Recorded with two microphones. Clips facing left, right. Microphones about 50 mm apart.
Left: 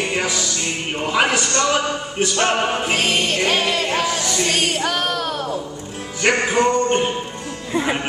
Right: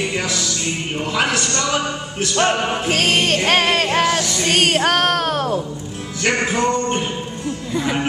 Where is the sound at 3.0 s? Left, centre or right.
Right.